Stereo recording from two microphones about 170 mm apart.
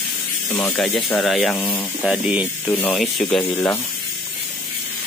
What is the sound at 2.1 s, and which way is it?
Speech, 5° right (ahead or behind).